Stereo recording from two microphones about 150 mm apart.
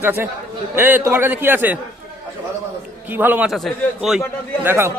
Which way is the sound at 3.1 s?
10° right (ahead or behind).